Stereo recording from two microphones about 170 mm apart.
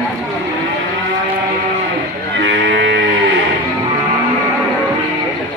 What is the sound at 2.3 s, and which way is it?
Cattle, 90° right.